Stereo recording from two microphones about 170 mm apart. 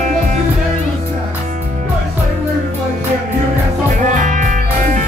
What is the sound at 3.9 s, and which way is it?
Music, 45° right (ahead or behind).